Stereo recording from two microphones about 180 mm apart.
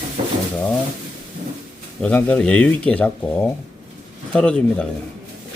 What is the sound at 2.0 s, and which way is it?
Speech, 5° left (ahead or behind).